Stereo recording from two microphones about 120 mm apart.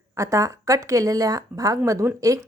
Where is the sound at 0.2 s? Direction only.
25° right (ahead or behind).